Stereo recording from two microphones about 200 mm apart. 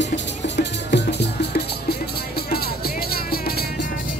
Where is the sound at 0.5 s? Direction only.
60° left (ahead or behind).